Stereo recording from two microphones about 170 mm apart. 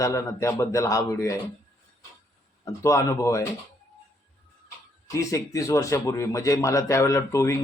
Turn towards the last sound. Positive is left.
turn(degrees=15)  # may be behind; listen again after turning